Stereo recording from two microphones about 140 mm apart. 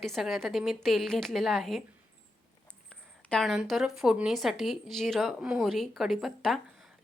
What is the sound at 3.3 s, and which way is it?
A woman's voice, centre (ahead or behind).